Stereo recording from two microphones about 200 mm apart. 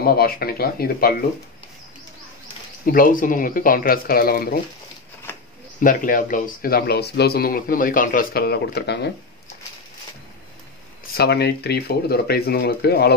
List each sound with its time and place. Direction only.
0.0 s speech: 50° left (ahead or behind)
2.8 s speech: 45° left (ahead or behind)
5.8 s speech: 45° left (ahead or behind)
11.1 s speech: 55° left (ahead or behind)